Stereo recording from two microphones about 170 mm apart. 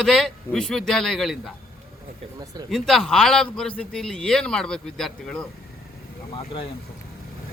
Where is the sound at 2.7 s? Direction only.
Centre (ahead or behind).